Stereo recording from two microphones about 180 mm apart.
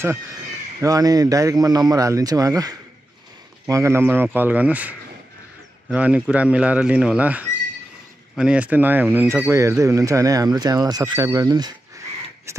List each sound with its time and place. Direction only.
0.7 s speech: 20° right (ahead or behind)